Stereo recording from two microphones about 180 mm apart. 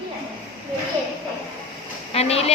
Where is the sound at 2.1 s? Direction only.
35° left (ahead or behind).